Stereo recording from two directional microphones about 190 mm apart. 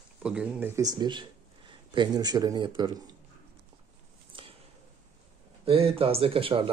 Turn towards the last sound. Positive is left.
turn(degrees=-30)  # may be behind; listen again after turning